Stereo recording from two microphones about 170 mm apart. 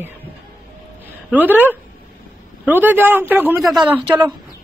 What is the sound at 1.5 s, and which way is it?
A man's voice, 10° right (ahead or behind).